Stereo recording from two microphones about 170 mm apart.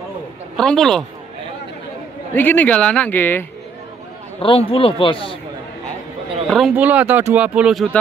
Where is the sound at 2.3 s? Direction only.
10° left (ahead or behind).